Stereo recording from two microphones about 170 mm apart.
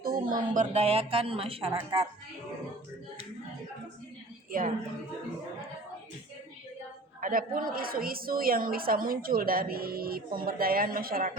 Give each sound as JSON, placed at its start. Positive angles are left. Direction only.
{"t": 0.0, "sound": "a woman's voice", "side_deg": -55}
{"t": 7.2, "sound": "a woman's voice", "side_deg": -55}